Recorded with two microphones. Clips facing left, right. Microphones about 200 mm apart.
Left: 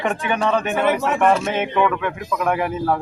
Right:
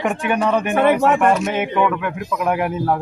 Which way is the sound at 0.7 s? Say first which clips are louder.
Right 4 dB; 60° right (ahead or behind).